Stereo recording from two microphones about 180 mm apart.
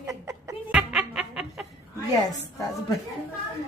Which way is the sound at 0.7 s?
5° right (ahead or behind).